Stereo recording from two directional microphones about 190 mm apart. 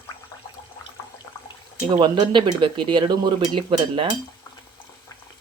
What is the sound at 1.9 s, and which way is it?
Speech, 25° right (ahead or behind).